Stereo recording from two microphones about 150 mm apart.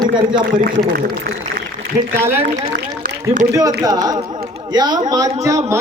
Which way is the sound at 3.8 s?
25° right (ahead or behind).